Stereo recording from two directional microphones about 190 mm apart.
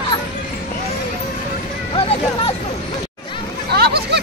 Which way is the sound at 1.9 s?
30° left (ahead or behind).